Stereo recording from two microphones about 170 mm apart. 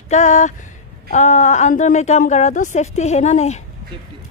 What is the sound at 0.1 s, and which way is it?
A woman's voice, 45° left (ahead or behind).